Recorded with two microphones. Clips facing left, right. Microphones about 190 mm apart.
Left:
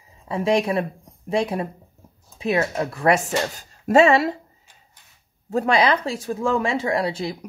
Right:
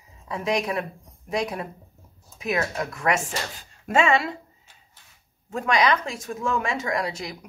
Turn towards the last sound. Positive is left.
turn(degrees=30)  # may be behind; listen again after turning